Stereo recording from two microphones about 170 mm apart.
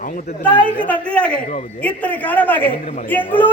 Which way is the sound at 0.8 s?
10° left (ahead or behind).